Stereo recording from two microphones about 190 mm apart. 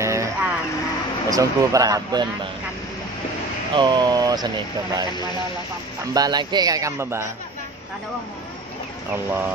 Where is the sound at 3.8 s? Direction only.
20° right (ahead or behind).